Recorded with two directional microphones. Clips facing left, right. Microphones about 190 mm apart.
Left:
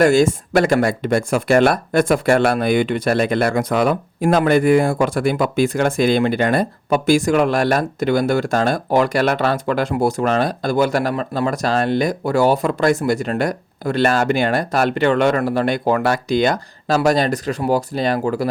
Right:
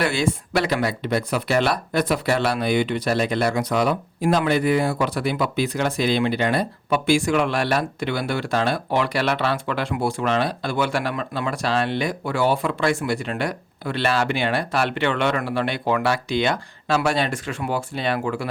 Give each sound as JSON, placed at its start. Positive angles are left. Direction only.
{"t": 0.0, "sound": "speech", "side_deg": 45}